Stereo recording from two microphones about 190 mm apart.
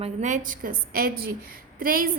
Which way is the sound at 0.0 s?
40° right (ahead or behind).